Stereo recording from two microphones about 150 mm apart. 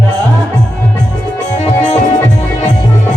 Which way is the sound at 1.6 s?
50° left (ahead or behind).